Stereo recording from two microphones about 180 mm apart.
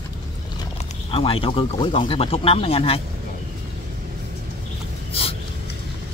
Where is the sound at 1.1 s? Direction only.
30° left (ahead or behind).